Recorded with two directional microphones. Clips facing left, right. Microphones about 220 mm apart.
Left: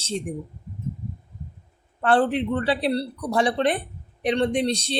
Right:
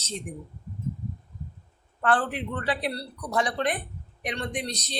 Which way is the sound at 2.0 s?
25° left (ahead or behind).